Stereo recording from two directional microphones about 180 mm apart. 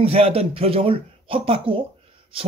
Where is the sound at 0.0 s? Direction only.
35° right (ahead or behind).